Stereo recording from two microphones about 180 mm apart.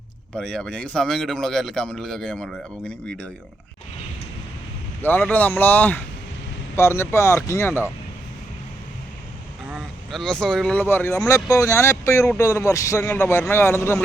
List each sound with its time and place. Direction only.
0.3 s speech: 5° left (ahead or behind)
5.0 s speech: 10° left (ahead or behind)
9.6 s speech: centre (ahead or behind); by 14.0 s 15° left (ahead or behind)